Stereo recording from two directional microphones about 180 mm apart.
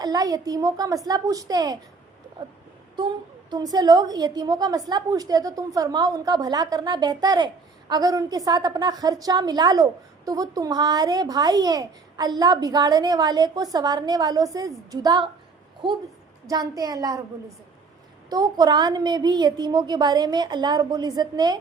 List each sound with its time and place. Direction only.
0.0 s a woman's voice: 20° right (ahead or behind)
3.5 s a woman's voice: 20° right (ahead or behind)
16.5 s a woman's voice: 20° right (ahead or behind)
18.3 s a woman's voice: 20° right (ahead or behind)